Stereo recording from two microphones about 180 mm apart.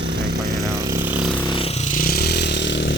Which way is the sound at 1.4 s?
30° left (ahead or behind).